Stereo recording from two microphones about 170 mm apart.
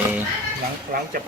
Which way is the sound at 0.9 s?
55° right (ahead or behind).